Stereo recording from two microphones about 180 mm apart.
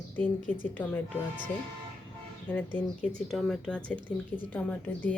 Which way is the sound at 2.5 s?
10° left (ahead or behind).